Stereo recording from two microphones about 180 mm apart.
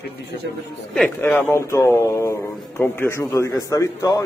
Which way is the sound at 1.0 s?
10° left (ahead or behind).